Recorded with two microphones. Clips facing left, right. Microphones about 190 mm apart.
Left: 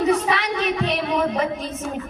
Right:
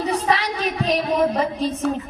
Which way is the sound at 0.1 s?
35° right (ahead or behind).